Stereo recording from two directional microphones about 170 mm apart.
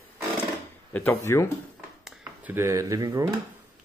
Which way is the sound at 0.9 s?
15° left (ahead or behind).